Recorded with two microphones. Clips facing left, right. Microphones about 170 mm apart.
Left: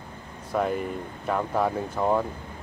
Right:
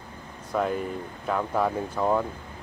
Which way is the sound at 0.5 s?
5° left (ahead or behind).